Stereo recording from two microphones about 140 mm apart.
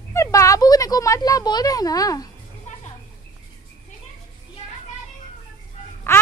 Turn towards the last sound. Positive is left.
turn(degrees=15)  # may be behind; listen again after turning